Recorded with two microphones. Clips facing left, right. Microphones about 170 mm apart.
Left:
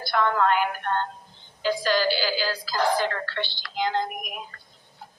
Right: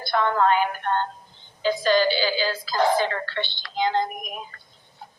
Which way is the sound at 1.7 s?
20° right (ahead or behind).